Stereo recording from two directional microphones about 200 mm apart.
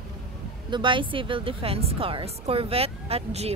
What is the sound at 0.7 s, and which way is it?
Speech, 25° right (ahead or behind).